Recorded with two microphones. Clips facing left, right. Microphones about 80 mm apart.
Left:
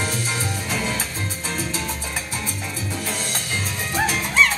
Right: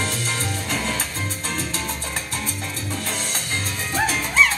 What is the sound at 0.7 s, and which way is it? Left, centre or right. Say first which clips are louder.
Music: even; centre.